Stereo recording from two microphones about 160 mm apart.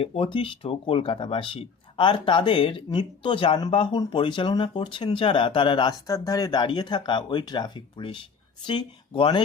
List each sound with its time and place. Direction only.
0.0 s speech: 35° left (ahead or behind)